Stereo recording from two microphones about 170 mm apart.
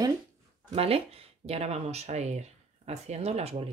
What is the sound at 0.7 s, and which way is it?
Speech, 35° right (ahead or behind).